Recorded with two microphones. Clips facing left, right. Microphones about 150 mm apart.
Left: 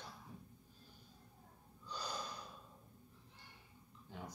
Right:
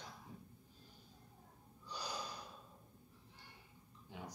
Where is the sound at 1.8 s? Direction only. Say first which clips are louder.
Even; 15° right (ahead or behind).